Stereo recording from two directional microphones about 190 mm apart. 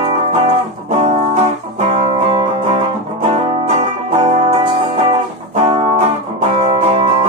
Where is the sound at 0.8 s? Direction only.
35° right (ahead or behind).